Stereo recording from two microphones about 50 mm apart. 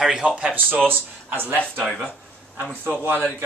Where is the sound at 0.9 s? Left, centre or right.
Right.